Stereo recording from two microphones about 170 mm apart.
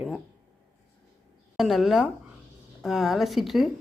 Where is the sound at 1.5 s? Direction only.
Centre (ahead or behind).